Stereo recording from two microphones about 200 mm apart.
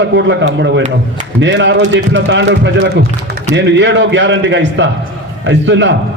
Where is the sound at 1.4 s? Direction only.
65° right (ahead or behind).